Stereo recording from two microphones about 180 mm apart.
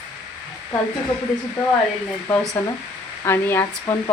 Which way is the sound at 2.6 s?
10° left (ahead or behind).